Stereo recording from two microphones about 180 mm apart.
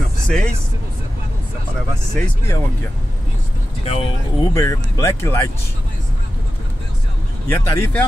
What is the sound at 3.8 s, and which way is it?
Speech, 35° left (ahead or behind).